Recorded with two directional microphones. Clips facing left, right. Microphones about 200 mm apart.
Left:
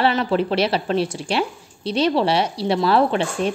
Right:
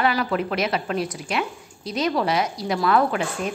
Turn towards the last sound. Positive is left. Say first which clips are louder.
# left 4 dB
turn(degrees=30)  # may be behind; listen again after turning